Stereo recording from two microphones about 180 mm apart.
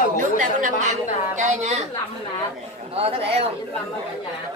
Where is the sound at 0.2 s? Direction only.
45° right (ahead or behind).